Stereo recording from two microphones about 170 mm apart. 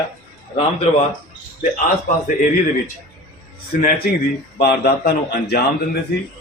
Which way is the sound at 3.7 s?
55° left (ahead or behind).